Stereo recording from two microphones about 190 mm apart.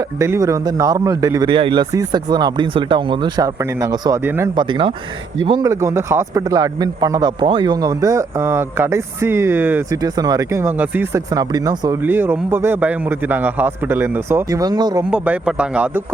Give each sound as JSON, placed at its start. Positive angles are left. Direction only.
{"t": 0.2, "sound": "a man's voice", "side_deg": -15}
{"t": 4.5, "sound": "a man's voice", "side_deg": -25}
{"t": 15.1, "sound": "speech", "side_deg": -5}